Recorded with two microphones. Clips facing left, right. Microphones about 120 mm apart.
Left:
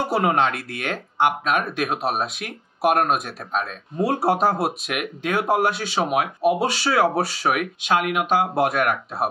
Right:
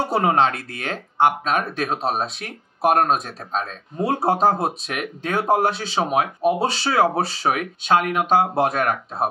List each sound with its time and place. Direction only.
0.1 s speech: 30° right (ahead or behind)